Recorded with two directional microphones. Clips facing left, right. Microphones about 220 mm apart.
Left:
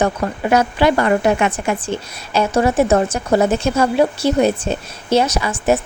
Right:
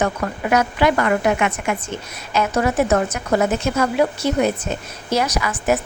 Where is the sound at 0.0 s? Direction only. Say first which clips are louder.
Left 3 dB; 30° left (ahead or behind).